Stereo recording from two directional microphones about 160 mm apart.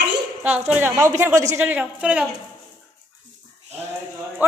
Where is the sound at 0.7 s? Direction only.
15° right (ahead or behind).